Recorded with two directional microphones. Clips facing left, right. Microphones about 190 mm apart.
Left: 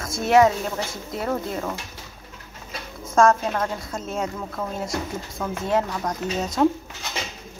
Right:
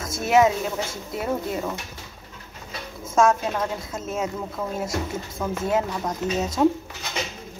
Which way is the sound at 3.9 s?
5° right (ahead or behind).